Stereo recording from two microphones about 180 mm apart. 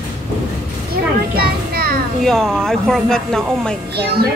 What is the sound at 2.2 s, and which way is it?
Speech, centre (ahead or behind).